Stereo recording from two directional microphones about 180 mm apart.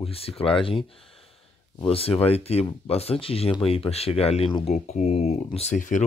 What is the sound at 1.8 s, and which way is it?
Speech, 30° left (ahead or behind).